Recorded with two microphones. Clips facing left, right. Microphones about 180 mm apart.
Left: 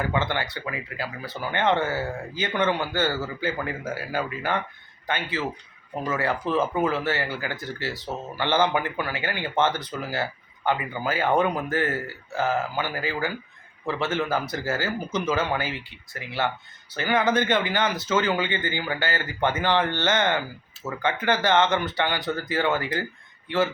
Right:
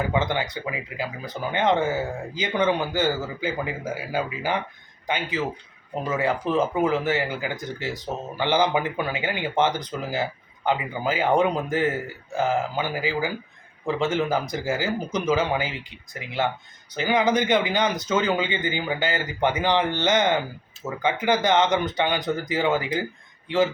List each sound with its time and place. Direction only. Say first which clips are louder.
0.0 s speech: right 2 dB; 15° right (ahead or behind)